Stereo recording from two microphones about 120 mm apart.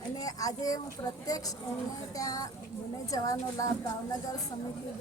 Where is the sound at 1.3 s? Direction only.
30° left (ahead or behind).